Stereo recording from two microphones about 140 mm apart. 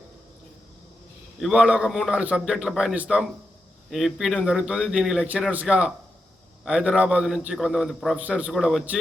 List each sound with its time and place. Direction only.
1.4 s a man's voice: 5° right (ahead or behind)